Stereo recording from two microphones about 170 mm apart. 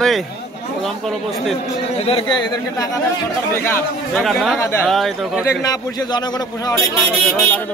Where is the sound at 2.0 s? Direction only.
35° left (ahead or behind).